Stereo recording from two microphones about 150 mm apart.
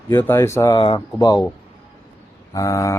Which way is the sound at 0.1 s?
15° left (ahead or behind).